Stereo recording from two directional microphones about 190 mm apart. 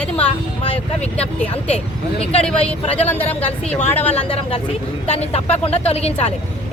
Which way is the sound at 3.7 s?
10° left (ahead or behind).